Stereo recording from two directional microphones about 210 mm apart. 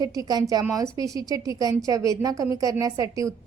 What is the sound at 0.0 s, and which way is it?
A woman's voice, 15° right (ahead or behind).